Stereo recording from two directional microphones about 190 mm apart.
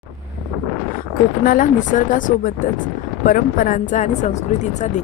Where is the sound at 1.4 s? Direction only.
45° left (ahead or behind).